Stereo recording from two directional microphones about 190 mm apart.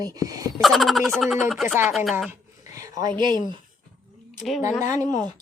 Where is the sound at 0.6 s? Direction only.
Centre (ahead or behind).